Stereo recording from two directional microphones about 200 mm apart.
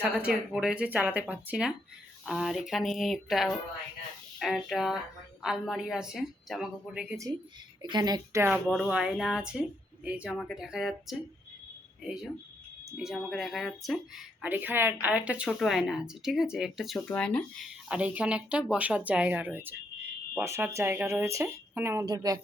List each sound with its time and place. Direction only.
0.0 s a woman's voice: 5° right (ahead or behind)
7.8 s speech: 20° right (ahead or behind)
8.6 s a woman's voice: centre (ahead or behind)
13.0 s a woman's voice: 5° right (ahead or behind); by 22.4 s 20° right (ahead or behind)